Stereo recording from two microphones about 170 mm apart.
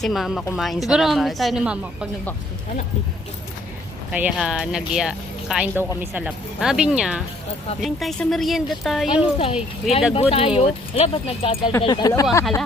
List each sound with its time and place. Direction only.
0.0 s speech: centre (ahead or behind)
4.1 s speech: 5° right (ahead or behind)
10.2 s speech: 35° left (ahead or behind); by 12.5 s 20° left (ahead or behind)